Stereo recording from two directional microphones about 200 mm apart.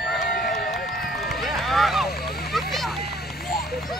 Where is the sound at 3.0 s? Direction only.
50° left (ahead or behind).